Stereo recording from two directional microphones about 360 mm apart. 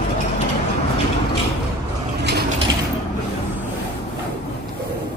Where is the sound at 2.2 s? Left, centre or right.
Right.